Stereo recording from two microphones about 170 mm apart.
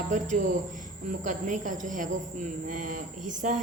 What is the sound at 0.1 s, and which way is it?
A woman's voice, 50° right (ahead or behind).